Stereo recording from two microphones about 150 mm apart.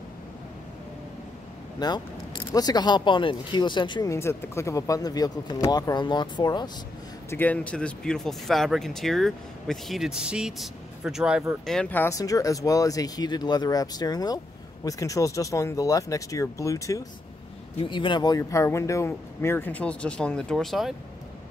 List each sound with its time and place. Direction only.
1.8 s speech: 30° left (ahead or behind)
4.1 s speech: 20° left (ahead or behind)
7.2 s speech: 10° left (ahead or behind)
17.7 s speech: 30° left (ahead or behind); by 20.9 s centre (ahead or behind)